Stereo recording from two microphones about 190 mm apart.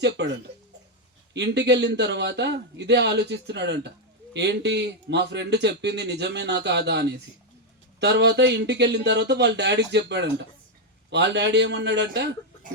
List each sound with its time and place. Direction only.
0.0 s a man's voice: 65° right (ahead or behind)